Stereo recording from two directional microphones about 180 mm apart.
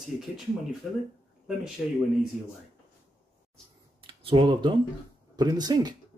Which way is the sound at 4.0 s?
30° right (ahead or behind).